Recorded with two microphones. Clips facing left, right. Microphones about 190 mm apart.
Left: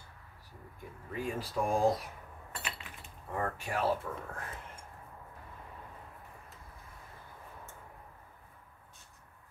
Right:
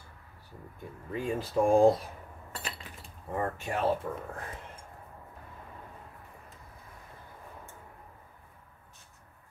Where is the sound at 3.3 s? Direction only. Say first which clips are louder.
Right 2 dB; 20° right (ahead or behind).